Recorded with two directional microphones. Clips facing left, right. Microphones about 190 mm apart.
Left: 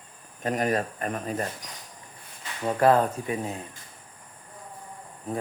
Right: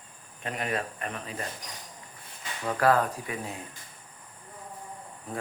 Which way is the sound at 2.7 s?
25° left (ahead or behind).